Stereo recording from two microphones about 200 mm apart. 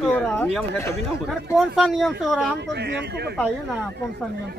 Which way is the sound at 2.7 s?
55° right (ahead or behind).